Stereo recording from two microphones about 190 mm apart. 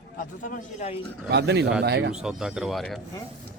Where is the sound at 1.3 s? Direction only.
60° right (ahead or behind).